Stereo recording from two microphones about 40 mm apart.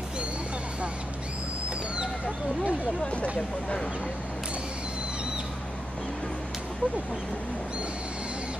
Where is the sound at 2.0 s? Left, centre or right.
Right.